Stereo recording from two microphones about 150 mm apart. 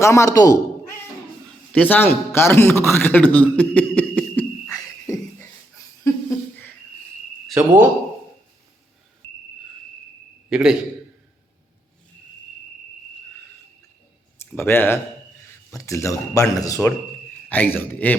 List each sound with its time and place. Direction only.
0.0 s a man's voice: 20° left (ahead or behind)
1.7 s a man's voice: 10° left (ahead or behind)
4.7 s cricket: 20° left (ahead or behind)
7.4 s speech: 5° right (ahead or behind)
10.5 s a man's voice: 5° right (ahead or behind)
14.5 s a man's voice: 15° left (ahead or behind)
17.5 s a man's voice: 10° left (ahead or behind)